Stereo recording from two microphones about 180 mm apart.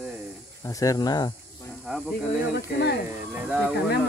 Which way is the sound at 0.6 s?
20° left (ahead or behind).